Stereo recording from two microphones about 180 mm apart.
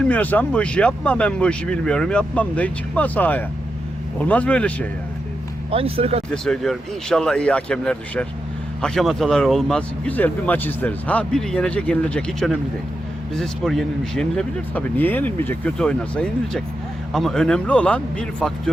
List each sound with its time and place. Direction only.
0.0 s speech: 10° left (ahead or behind)
5.7 s speech: 30° right (ahead or behind)
6.3 s speech: 5° left (ahead or behind)